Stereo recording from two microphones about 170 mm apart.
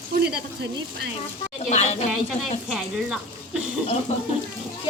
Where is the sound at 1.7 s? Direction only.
40° left (ahead or behind).